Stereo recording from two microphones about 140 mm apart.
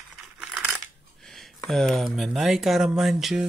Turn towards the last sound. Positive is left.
turn(degrees=0)  # may be behind; listen again after turning